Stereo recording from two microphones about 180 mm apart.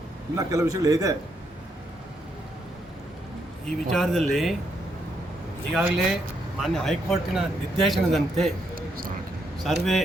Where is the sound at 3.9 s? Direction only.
Centre (ahead or behind).